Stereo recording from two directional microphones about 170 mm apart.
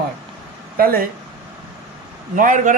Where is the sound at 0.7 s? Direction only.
60° right (ahead or behind).